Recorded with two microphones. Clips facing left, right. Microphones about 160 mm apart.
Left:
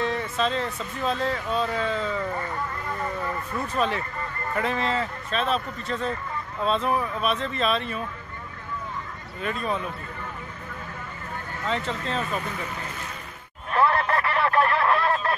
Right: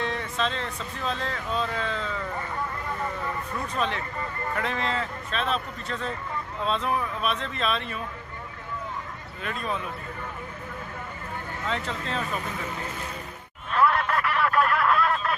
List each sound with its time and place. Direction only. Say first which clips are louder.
0.0 s speech: left 3 dB; 5° left (ahead or behind)
3.6 s speech: left 3 dB; 5° left (ahead or behind)
9.4 s speech: left 3 dB; centre (ahead or behind)
11.6 s speech: left 3 dB; centre (ahead or behind)
13.7 s a sound: left 1 dB; 30° left (ahead or behind)